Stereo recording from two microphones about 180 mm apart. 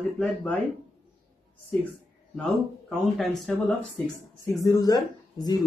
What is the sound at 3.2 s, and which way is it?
Speech, 5° left (ahead or behind).